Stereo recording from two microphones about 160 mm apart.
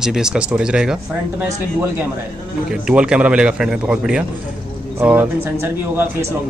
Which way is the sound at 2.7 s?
5° right (ahead or behind).